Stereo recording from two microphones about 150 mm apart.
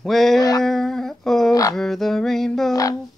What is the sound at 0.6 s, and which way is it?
Humming, 5° left (ahead or behind).